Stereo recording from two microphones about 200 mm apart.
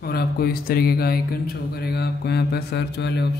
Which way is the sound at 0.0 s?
50° left (ahead or behind).